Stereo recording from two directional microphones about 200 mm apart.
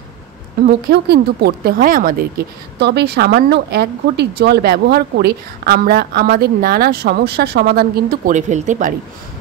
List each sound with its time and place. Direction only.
0.7 s speech: 50° right (ahead or behind)